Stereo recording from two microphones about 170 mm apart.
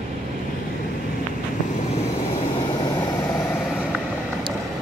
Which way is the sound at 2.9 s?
15° left (ahead or behind).